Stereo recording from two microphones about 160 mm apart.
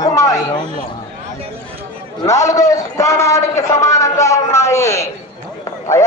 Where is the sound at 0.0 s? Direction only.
20° left (ahead or behind).